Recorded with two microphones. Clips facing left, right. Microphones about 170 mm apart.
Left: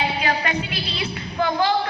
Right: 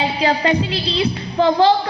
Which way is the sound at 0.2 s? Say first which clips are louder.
Right 7 dB; 30° right (ahead or behind).